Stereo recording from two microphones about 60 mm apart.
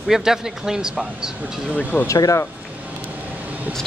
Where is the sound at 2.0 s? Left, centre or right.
Left.